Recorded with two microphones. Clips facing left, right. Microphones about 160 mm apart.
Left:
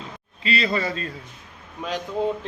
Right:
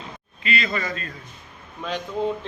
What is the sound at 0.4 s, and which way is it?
Speech, 30° left (ahead or behind).